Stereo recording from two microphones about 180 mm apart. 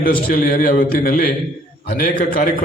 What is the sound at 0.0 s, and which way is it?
A man's voice, 50° left (ahead or behind).